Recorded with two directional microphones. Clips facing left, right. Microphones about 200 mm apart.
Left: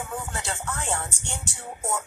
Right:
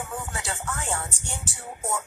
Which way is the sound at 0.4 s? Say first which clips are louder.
Left 1 dB; centre (ahead or behind).